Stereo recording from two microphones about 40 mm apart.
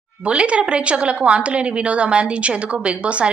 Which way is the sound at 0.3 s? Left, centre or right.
Right.